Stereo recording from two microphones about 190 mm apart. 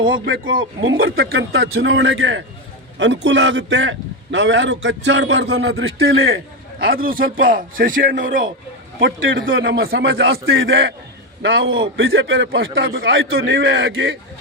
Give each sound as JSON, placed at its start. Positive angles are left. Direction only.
{"t": 0.1, "sound": "a man's voice", "side_deg": -90}
{"t": 1.1, "sound": "a man's voice", "side_deg": -55}
{"t": 6.7, "sound": "a man's voice", "side_deg": -50}
{"t": 9.0, "sound": "a man's voice", "side_deg": -55}
{"t": 9.5, "sound": "a man's voice", "side_deg": -80}
{"t": 13.9, "sound": "a man's voice", "side_deg": -90}